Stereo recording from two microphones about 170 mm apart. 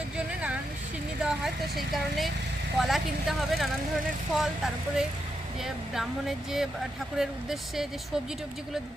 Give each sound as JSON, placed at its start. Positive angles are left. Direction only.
{"t": 0.3, "sound": "vehicle", "side_deg": -5}
{"t": 1.2, "sound": "speech", "side_deg": 0}
{"t": 2.7, "sound": "speech", "side_deg": 0}